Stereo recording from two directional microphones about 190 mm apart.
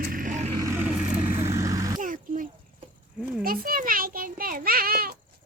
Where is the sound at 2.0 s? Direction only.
45° right (ahead or behind).